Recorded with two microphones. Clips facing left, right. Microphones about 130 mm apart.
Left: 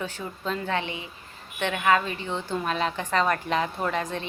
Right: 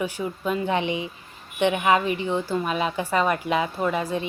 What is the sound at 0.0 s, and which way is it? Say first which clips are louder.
A woman's voice: right 5 dB; 10° right (ahead or behind).